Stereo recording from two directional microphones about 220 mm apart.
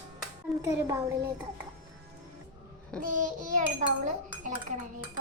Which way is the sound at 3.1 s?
35° right (ahead or behind).